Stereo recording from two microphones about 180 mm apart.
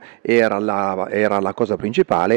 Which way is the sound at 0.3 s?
15° right (ahead or behind).